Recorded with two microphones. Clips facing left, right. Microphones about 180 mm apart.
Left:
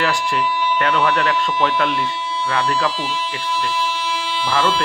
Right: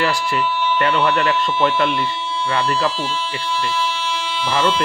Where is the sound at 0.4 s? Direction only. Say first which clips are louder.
Even; 10° left (ahead or behind).